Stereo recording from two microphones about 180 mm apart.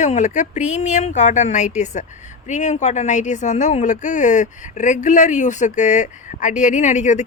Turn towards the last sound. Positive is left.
turn(degrees=40)  # may be behind; listen again after turning